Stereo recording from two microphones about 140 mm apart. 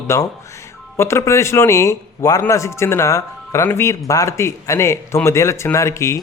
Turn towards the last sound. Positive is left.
turn(degrees=20)  # may be behind; listen again after turning